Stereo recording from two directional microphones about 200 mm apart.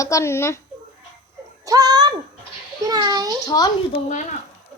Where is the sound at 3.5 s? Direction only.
20° left (ahead or behind).